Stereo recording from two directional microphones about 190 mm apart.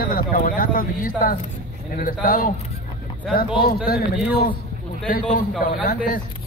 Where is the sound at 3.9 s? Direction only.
50° left (ahead or behind).